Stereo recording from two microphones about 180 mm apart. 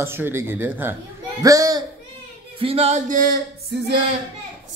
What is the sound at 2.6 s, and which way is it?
Music, 35° right (ahead or behind).